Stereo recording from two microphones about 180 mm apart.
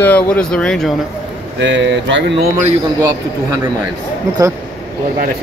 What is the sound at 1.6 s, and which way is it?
Speech, 90° right.